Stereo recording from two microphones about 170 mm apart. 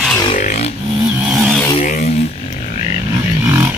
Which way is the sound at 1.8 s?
50° left (ahead or behind).